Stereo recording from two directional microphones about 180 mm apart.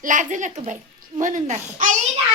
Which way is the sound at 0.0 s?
45° right (ahead or behind).